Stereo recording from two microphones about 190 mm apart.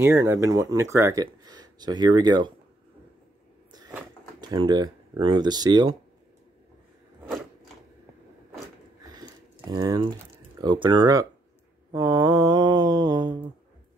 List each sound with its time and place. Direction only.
0.0 s speech: 10° right (ahead or behind)
4.4 s speech: 20° right (ahead or behind)
9.0 s a sound: 20° right (ahead or behind)
10.6 s speech: 25° right (ahead or behind)
11.9 s mantra: 25° right (ahead or behind)